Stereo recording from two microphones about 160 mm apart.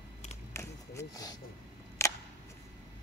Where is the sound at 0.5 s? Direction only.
15° left (ahead or behind).